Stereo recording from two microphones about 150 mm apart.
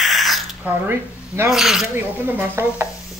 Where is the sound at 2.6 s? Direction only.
15° right (ahead or behind).